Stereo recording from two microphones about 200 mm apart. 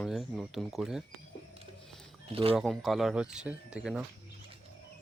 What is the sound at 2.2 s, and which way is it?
Speech, 30° right (ahead or behind).